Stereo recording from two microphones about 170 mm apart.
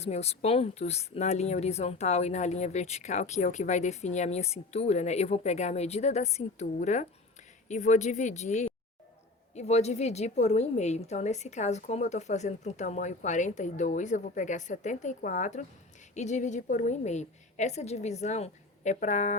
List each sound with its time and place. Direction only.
0.0 s a woman's voice: 40° left (ahead or behind)